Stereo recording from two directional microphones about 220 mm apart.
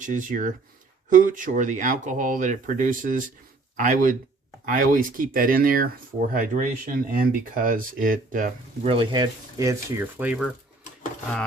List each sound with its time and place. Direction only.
0.0 s speech: 35° right (ahead or behind); by 10.5 s 5° right (ahead or behind)